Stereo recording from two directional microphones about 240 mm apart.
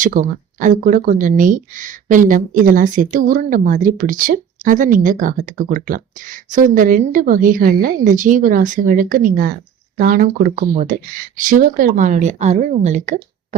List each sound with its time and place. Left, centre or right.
0.0 s speech: right